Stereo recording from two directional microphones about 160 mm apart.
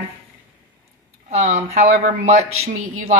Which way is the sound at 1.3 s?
45° right (ahead or behind).